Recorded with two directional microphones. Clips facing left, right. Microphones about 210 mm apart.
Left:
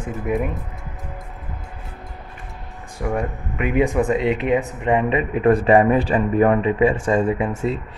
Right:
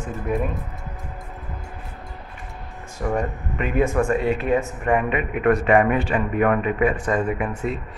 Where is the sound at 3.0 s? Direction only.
10° left (ahead or behind); by 7.5 s 30° left (ahead or behind).